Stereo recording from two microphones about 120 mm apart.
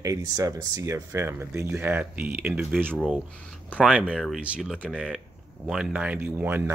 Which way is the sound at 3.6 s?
10° left (ahead or behind).